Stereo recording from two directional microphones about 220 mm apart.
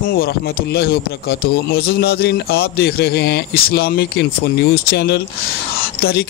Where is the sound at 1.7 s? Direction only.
45° left (ahead or behind).